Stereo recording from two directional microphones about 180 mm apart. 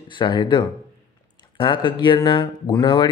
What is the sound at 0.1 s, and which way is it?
A man's voice, 25° left (ahead or behind).